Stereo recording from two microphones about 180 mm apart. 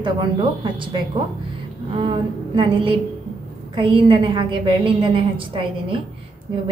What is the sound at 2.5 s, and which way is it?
A woman's voice, 30° right (ahead or behind).